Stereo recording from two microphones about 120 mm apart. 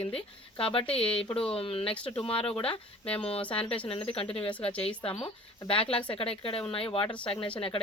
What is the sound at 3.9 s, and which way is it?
A woman's voice, 50° left (ahead or behind).